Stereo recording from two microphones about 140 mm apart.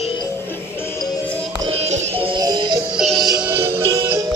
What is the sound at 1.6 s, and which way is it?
Music, 50° right (ahead or behind).